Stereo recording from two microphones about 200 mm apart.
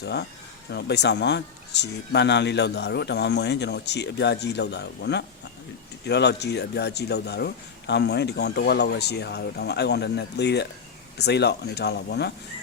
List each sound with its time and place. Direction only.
0.0 s speech: 55° left (ahead or behind)